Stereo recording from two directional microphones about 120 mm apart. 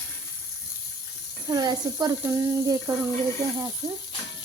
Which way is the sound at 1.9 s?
25° right (ahead or behind).